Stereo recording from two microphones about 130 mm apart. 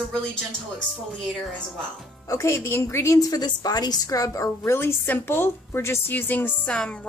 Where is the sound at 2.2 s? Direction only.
25° left (ahead or behind).